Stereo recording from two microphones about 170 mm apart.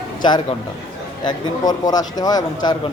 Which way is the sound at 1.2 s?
25° left (ahead or behind).